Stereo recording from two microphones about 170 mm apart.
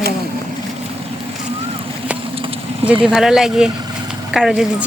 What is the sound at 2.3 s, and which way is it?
Vehicle, 35° right (ahead or behind).